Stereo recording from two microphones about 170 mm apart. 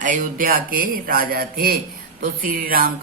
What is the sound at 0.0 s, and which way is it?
Speech, 50° right (ahead or behind).